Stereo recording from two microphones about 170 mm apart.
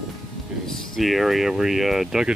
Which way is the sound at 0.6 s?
Centre (ahead or behind).